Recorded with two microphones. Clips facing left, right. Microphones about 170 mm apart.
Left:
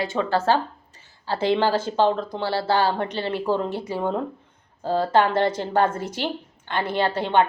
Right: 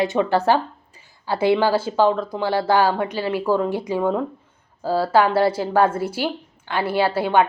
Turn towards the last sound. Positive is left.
turn(degrees=-10)  # may be behind; listen again after turning